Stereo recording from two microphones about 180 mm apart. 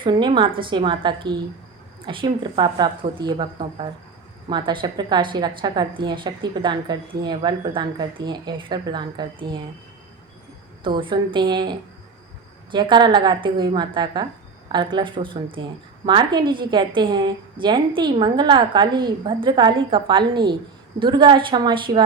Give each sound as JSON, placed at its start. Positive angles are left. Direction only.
{"t": 0.0, "sound": "a woman's voice", "side_deg": -25}
{"t": 10.8, "sound": "a woman's voice", "side_deg": -25}